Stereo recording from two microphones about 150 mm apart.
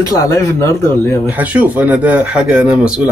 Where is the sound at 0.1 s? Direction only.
20° left (ahead or behind).